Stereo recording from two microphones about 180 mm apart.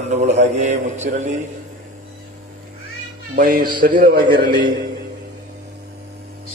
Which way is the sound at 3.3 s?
50° right (ahead or behind).